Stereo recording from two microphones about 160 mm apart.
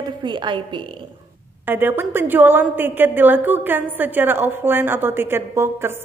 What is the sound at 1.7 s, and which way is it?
A woman's voice, 10° right (ahead or behind).